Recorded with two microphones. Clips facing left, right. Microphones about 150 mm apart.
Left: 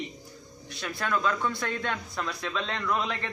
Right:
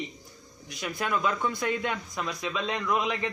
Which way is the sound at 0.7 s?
15° right (ahead or behind).